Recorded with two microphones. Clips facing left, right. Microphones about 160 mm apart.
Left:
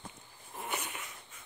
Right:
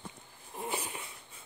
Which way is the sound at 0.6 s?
30° right (ahead or behind).